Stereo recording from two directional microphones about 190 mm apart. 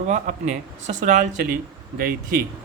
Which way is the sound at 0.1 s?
40° right (ahead or behind).